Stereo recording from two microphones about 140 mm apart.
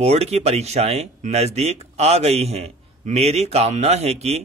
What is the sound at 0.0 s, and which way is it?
Speech, 50° right (ahead or behind).